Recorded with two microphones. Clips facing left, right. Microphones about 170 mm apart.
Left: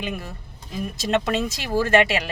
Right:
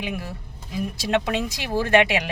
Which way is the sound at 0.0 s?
10° right (ahead or behind).